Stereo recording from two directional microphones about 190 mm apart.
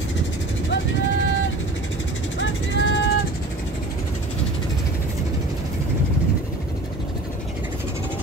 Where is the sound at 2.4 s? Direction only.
75° left (ahead or behind).